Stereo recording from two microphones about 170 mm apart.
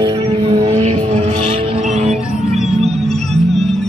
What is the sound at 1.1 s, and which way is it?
Music, 40° right (ahead or behind).